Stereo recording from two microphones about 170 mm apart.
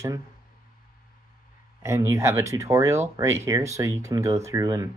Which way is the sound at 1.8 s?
15° right (ahead or behind).